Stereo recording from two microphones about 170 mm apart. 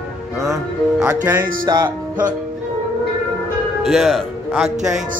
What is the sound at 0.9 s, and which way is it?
Speech, 10° right (ahead or behind).